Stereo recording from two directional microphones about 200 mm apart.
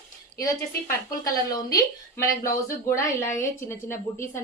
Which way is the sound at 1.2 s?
20° left (ahead or behind).